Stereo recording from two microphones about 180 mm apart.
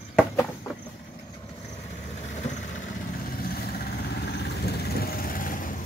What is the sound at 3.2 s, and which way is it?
Vehicle, 55° left (ahead or behind).